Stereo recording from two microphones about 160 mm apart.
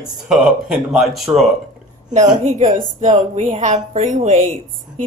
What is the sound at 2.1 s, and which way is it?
A woman's voice, 50° right (ahead or behind).